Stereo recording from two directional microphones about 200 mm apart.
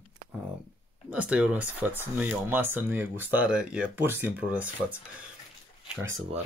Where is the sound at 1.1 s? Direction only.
5° right (ahead or behind).